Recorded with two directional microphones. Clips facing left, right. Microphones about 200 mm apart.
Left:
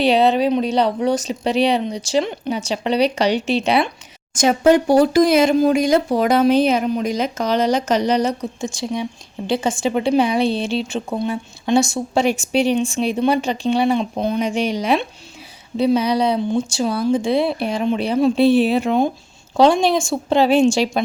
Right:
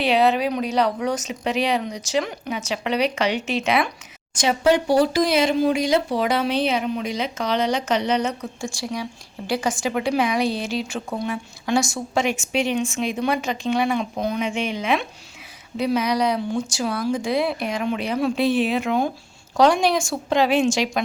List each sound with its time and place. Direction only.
0.0 s speech: 30° left (ahead or behind)
4.4 s speech: 45° left (ahead or behind)
8.6 s speech: 20° left (ahead or behind)